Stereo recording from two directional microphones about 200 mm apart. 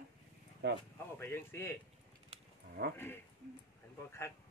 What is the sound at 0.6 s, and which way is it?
Speech, 60° right (ahead or behind).